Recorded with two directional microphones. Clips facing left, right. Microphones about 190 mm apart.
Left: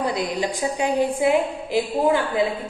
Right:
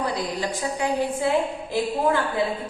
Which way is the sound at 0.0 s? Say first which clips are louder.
Left 3 dB; 15° left (ahead or behind).